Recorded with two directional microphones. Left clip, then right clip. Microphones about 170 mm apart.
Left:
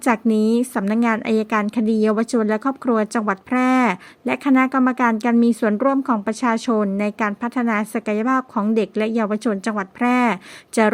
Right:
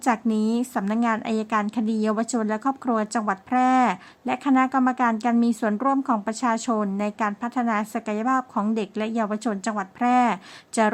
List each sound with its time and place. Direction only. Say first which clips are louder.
0.0 s a woman's voice: left 5 dB; 20° left (ahead or behind)